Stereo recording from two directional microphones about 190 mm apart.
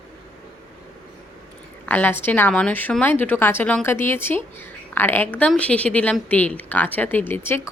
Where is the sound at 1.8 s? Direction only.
10° left (ahead or behind).